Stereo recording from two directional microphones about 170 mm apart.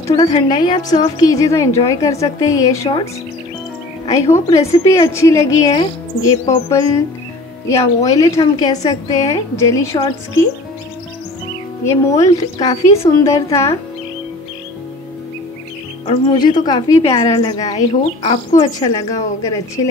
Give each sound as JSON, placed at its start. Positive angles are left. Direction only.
{"t": 0.0, "sound": "a woman's voice", "side_deg": 20}
{"t": 4.1, "sound": "a woman's voice", "side_deg": 20}
{"t": 11.8, "sound": "a woman's voice", "side_deg": 15}
{"t": 16.1, "sound": "a woman's voice", "side_deg": 25}
{"t": 17.7, "sound": "speech", "side_deg": 35}
{"t": 18.5, "sound": "a woman's voice", "side_deg": 20}